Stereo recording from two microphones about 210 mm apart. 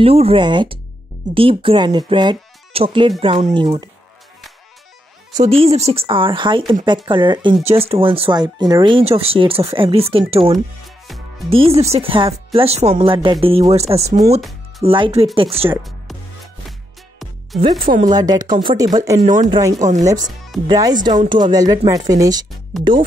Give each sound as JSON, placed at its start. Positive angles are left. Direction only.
{"t": 0.0, "sound": "speech", "side_deg": -25}
{"t": 5.3, "sound": "speech", "side_deg": -30}
{"t": 15.7, "sound": "music", "side_deg": 0}
{"t": 17.6, "sound": "speech", "side_deg": -25}
{"t": 17.8, "sound": "speech", "side_deg": -40}
{"t": 18.1, "sound": "speech", "side_deg": -20}
{"t": 19.2, "sound": "speech", "side_deg": -35}
{"t": 20.0, "sound": "speech", "side_deg": -15}